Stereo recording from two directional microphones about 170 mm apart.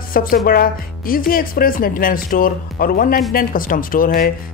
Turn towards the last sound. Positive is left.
turn(degrees=55)  # may be behind; listen again after turning